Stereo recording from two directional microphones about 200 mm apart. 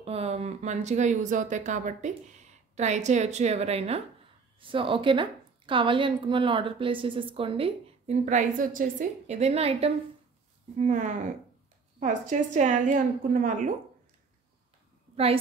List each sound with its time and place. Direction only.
0.0 s a woman's voice: 30° right (ahead or behind)